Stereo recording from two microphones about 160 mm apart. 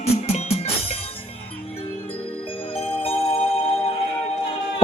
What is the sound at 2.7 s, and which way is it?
Music, 35° left (ahead or behind).